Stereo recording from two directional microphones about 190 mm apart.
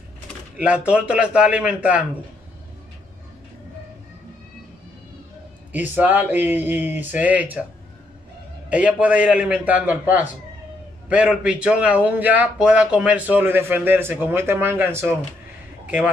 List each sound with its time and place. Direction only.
0.6 s a man's voice: 5° right (ahead or behind)
5.7 s a man's voice: 10° right (ahead or behind)
8.6 s a man's voice: 5° right (ahead or behind)